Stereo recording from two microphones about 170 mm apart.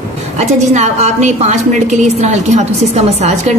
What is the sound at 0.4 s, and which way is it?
A woman's voice, 40° right (ahead or behind).